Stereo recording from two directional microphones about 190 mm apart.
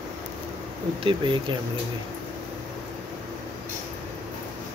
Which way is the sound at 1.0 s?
25° right (ahead or behind).